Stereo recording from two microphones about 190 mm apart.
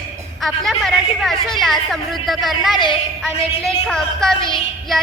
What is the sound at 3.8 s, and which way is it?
Speech, centre (ahead or behind).